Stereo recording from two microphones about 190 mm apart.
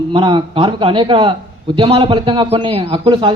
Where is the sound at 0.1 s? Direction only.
25° right (ahead or behind).